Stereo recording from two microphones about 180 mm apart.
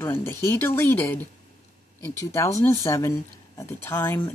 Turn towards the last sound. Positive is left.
turn(degrees=15)  # may be behind; listen again after turning